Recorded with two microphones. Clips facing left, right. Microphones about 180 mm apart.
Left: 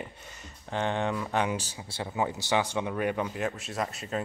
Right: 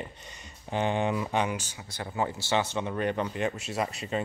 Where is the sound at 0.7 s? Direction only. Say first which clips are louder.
Right 2 dB; 10° right (ahead or behind).